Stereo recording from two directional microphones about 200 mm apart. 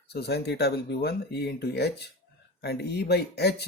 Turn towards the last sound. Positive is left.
turn(degrees=55)  # may be behind; listen again after turning